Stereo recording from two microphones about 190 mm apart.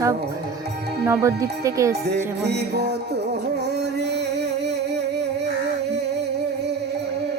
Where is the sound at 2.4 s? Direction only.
60° right (ahead or behind).